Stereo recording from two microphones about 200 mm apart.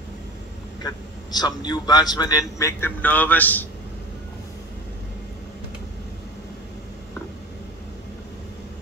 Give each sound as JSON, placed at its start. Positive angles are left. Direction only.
{"t": 0.8, "sound": "speech", "side_deg": 20}